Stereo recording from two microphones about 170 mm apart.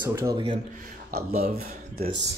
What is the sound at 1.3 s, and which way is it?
Speech, 40° right (ahead or behind).